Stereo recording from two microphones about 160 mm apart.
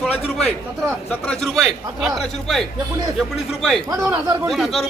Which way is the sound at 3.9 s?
20° right (ahead or behind).